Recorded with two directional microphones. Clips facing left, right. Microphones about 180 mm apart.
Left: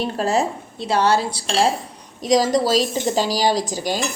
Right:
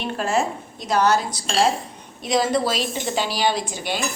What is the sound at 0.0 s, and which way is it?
A woman's voice, 35° left (ahead or behind).